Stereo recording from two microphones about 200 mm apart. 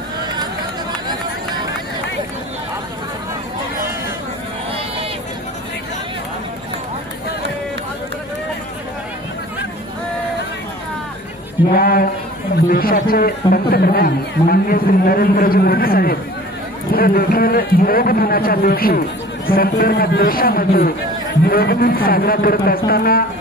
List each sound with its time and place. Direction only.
11.7 s a man's voice: 45° left (ahead or behind)